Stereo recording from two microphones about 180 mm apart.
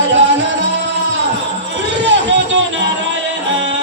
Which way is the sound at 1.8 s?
75° right (ahead or behind).